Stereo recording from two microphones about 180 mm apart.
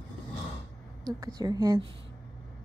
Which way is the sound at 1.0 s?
20° right (ahead or behind).